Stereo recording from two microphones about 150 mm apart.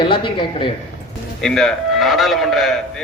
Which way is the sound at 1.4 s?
Centre (ahead or behind).